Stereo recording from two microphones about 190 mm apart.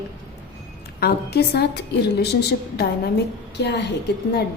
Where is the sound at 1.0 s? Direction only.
55° left (ahead or behind).